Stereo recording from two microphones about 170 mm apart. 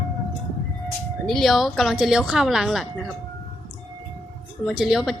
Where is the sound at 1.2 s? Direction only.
Centre (ahead or behind).